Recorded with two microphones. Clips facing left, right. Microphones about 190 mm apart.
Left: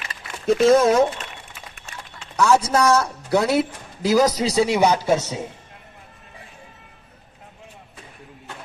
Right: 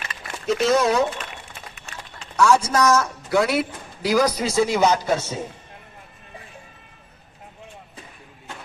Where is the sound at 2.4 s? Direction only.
20° left (ahead or behind); by 3.6 s 35° left (ahead or behind).